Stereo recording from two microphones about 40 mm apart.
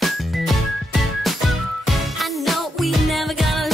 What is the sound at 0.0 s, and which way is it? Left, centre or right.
Music, centre.